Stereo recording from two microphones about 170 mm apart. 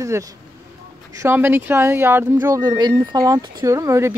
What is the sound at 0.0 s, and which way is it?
Speech, 20° right (ahead or behind).